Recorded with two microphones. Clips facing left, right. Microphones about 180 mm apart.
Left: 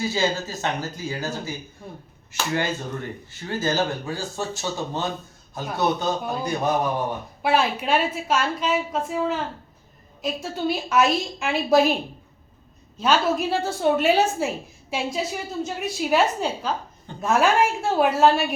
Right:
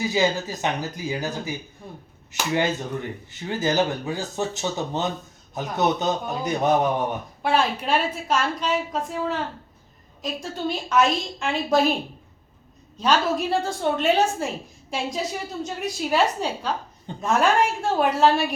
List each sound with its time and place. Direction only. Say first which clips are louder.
0.0 s a man's voice: right 2 dB; 15° right (ahead or behind)
7.4 s a woman's voice: left 1 dB; 5° left (ahead or behind)
13.0 s a woman's voice: left 1 dB; 5° left (ahead or behind)